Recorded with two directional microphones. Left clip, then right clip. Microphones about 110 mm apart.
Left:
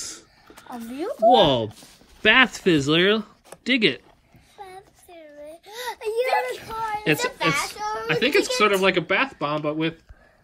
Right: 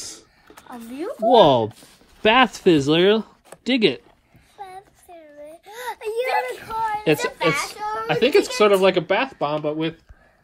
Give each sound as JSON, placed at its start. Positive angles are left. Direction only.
{"t": 0.0, "sound": "a sound", "side_deg": -65}
{"t": 0.7, "sound": "speech", "side_deg": 50}
{"t": 1.3, "sound": "speech", "side_deg": -55}
{"t": 2.2, "sound": "speech", "side_deg": -40}
{"t": 4.6, "sound": "a sound", "side_deg": -45}
{"t": 6.7, "sound": "a sound", "side_deg": -35}
{"t": 7.5, "sound": "child singing", "side_deg": 0}
{"t": 8.1, "sound": "speech", "side_deg": -30}
{"t": 9.0, "sound": "speech", "side_deg": -20}